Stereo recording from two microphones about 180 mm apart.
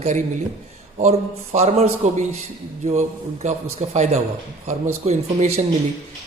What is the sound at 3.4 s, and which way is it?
A man's voice, 40° right (ahead or behind).